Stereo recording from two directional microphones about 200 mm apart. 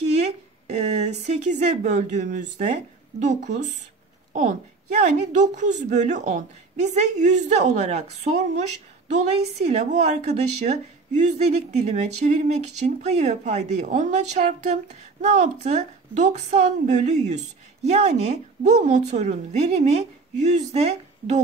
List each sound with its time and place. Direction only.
0.1 s a woman's voice: 35° right (ahead or behind)
9.7 s a woman's voice: 35° right (ahead or behind)